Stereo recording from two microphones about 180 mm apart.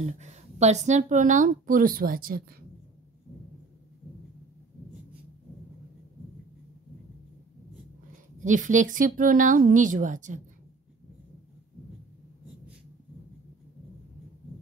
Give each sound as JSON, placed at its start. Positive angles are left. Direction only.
{"t": 0.0, "sound": "speech", "side_deg": -40}
{"t": 8.4, "sound": "speech", "side_deg": -45}